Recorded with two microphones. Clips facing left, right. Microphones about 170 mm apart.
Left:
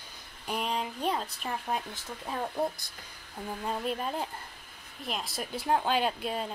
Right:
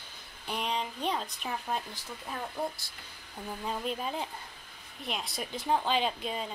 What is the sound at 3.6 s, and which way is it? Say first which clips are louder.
Speech: left 2 dB; centre (ahead or behind).